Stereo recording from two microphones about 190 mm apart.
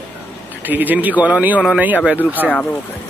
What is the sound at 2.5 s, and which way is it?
Speech, 10° left (ahead or behind).